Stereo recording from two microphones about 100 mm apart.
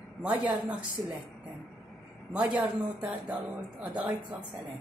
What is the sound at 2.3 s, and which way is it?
Speech, 10° right (ahead or behind).